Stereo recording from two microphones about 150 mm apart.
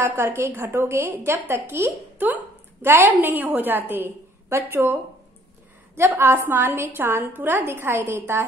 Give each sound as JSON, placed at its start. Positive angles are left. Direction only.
{"t": 0.0, "sound": "a woman's voice", "side_deg": -15}
{"t": 5.9, "sound": "a woman's voice", "side_deg": -15}